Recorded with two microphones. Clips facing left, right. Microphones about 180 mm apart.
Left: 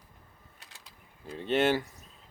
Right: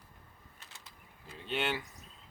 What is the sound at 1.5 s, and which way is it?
Speech, 45° left (ahead or behind).